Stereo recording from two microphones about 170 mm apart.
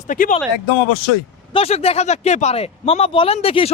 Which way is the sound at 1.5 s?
35° left (ahead or behind).